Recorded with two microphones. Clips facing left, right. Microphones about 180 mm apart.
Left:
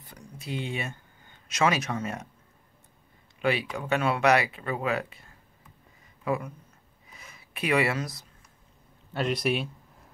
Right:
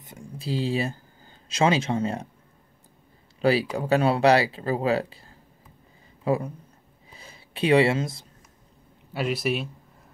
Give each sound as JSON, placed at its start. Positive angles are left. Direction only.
{"t": 0.0, "sound": "speech", "side_deg": -25}
{"t": 3.3, "sound": "speech", "side_deg": -35}
{"t": 7.1, "sound": "a sound", "side_deg": -30}
{"t": 9.1, "sound": "a man's voice", "side_deg": -5}